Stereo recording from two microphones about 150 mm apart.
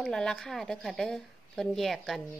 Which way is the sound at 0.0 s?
5° left (ahead or behind).